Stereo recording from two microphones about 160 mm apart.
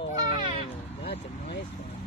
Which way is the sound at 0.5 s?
40° left (ahead or behind).